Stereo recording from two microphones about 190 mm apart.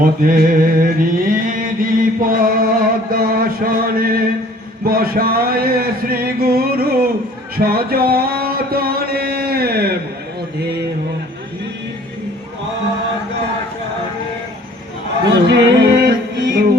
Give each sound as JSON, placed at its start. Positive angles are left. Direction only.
{"t": 0.0, "sound": "mantra", "side_deg": -50}
{"t": 3.1, "sound": "music", "side_deg": -50}
{"t": 4.9, "sound": "a sound", "side_deg": -50}
{"t": 15.4, "sound": "music", "side_deg": -65}